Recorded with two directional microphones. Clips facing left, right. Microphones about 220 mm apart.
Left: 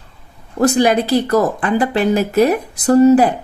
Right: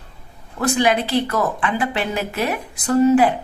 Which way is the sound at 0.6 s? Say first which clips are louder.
Left 5 dB; 40° left (ahead or behind).